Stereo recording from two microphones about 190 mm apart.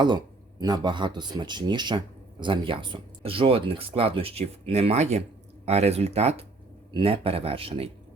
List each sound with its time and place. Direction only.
0.0 s a man's voice: 20° right (ahead or behind)